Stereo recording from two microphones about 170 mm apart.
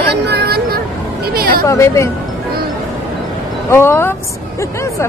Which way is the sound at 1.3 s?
60° right (ahead or behind).